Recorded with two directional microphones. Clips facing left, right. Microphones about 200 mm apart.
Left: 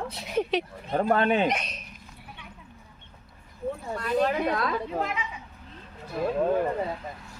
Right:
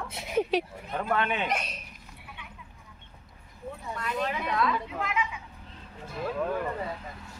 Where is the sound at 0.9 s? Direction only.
40° left (ahead or behind).